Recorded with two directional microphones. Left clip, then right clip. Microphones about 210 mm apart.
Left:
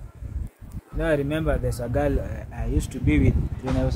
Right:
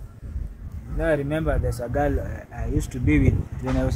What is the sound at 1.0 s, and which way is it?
Speech, 55° left (ahead or behind).